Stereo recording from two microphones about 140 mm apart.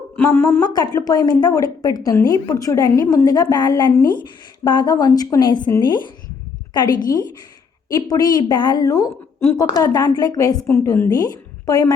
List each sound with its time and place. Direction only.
0.2 s a woman's voice: 15° left (ahead or behind)
0.6 s a woman's voice: 30° left (ahead or behind)
11.1 s a woman's voice: 30° left (ahead or behind)